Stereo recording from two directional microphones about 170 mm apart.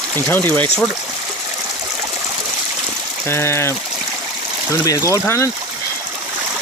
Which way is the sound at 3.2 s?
15° left (ahead or behind).